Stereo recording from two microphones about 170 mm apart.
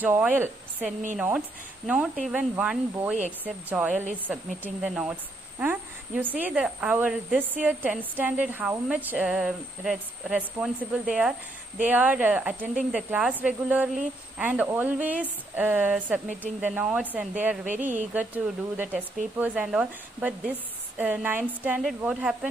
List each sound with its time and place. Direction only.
0.0 s a woman's voice: 10° right (ahead or behind)
17.7 s speech: 45° right (ahead or behind)
18.1 s speech: 10° right (ahead or behind)